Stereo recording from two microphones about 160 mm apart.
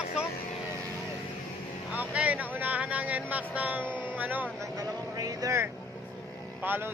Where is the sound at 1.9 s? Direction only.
10° right (ahead or behind).